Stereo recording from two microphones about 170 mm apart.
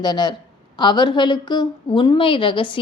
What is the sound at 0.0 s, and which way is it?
A woman's voice, 25° left (ahead or behind).